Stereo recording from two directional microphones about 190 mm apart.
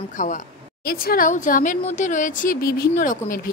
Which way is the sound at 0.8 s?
50° left (ahead or behind).